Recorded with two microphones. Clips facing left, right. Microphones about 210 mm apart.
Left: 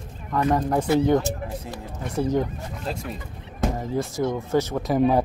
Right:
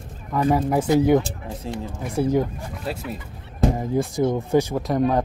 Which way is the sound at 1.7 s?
30° right (ahead or behind).